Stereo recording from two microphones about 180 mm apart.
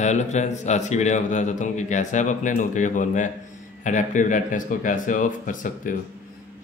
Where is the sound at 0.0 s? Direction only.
40° left (ahead or behind).